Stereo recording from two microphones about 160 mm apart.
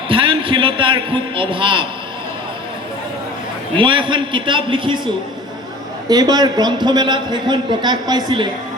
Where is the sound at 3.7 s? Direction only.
30° right (ahead or behind).